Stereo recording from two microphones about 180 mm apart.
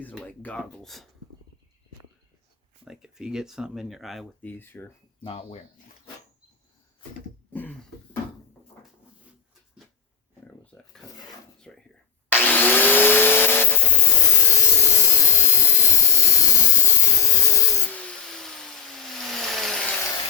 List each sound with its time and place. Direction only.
0.0 s speech: 10° left (ahead or behind)
2.8 s speech: 5° right (ahead or behind)
4.5 s speech: 10° left (ahead or behind)
5.2 s speech: 30° left (ahead or behind)
7.5 s speech: 10° left (ahead or behind)
10.4 s a sound: 5° left (ahead or behind)
11.7 s whispering: 5° left (ahead or behind)
12.3 s vacuum cleaner: 10° left (ahead or behind)
14.4 s wood: 15° left (ahead or behind)